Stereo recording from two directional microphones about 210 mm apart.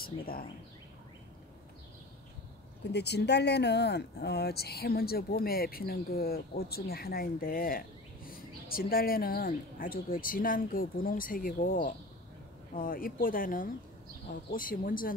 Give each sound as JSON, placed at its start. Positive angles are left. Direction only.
{"t": 0.0, "sound": "speech", "side_deg": 45}
{"t": 2.8, "sound": "speech", "side_deg": 50}